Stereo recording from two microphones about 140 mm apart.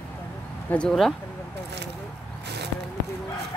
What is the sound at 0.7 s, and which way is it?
Speech, 5° left (ahead or behind).